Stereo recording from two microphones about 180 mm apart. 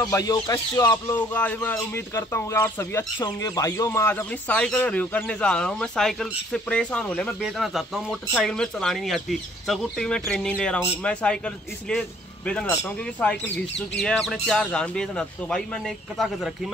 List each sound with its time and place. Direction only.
0.0 s speech: 20° left (ahead or behind); by 16.7 s centre (ahead or behind)